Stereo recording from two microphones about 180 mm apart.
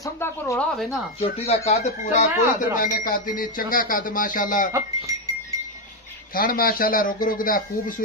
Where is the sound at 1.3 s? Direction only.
35° left (ahead or behind).